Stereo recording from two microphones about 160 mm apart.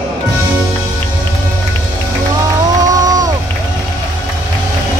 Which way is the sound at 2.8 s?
25° right (ahead or behind).